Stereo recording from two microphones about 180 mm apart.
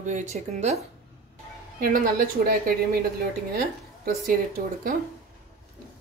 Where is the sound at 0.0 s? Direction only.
45° right (ahead or behind).